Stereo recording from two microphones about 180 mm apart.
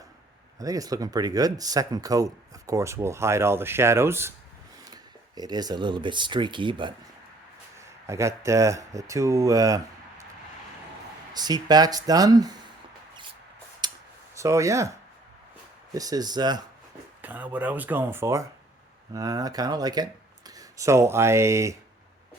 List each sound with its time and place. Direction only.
0.6 s speech: 20° right (ahead or behind)
8.0 s speech: 15° right (ahead or behind)
11.3 s speech: 20° right (ahead or behind)
13.8 s a sound: 25° right (ahead or behind)
14.3 s speech: 15° right (ahead or behind)
16.0 s speech: 20° right (ahead or behind)
17.2 s speech: 10° right (ahead or behind)